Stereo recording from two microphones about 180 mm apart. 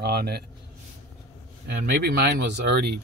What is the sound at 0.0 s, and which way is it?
Speech, 60° right (ahead or behind).